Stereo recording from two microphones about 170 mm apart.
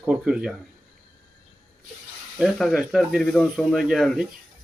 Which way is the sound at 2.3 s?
5° right (ahead or behind).